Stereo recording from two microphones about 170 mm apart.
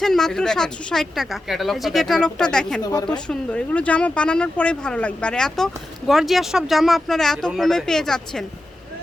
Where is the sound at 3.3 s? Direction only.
5° left (ahead or behind).